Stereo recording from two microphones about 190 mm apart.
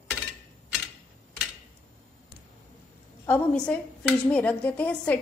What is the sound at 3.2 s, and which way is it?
A woman's voice, 10° left (ahead or behind).